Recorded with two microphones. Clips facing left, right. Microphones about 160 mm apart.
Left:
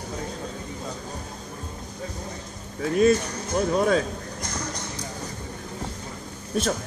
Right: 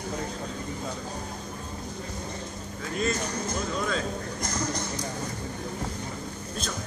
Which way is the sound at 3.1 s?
55° left (ahead or behind).